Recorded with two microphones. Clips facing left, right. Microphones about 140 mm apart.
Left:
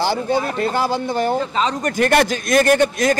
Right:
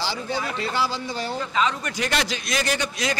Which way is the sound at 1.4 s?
35° left (ahead or behind).